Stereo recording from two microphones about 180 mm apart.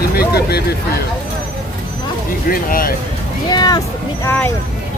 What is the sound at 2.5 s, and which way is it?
Speech, 50° left (ahead or behind).